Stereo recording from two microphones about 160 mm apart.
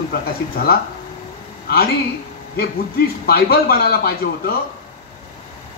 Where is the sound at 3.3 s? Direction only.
75° left (ahead or behind).